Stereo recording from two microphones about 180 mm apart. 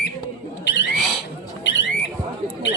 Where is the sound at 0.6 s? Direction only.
70° left (ahead or behind).